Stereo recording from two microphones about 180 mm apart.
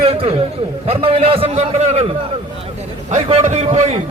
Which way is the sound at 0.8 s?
30° right (ahead or behind).